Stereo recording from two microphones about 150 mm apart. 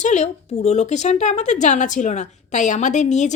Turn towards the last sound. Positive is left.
turn(degrees=50)  # may be behind; listen again after turning